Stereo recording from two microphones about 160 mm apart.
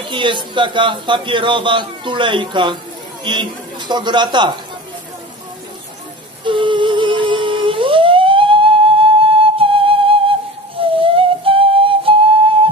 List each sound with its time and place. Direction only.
0.1 s a man's voice: 30° right (ahead or behind)
6.4 s a sound: 30° right (ahead or behind)
10.8 s flute: 35° right (ahead or behind)